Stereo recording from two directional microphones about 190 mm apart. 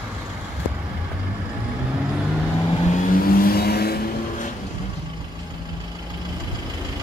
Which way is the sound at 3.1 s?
50° left (ahead or behind).